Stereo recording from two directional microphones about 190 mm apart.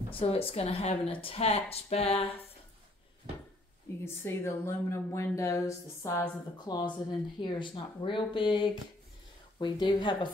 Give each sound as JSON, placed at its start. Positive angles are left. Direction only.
{"t": 0.1, "sound": "speech", "side_deg": 30}
{"t": 4.0, "sound": "a woman's voice", "side_deg": 15}